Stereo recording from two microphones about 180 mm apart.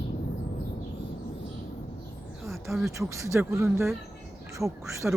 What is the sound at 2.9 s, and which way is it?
Speech, 15° right (ahead or behind).